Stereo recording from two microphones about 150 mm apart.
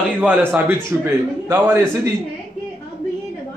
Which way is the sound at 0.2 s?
10° right (ahead or behind).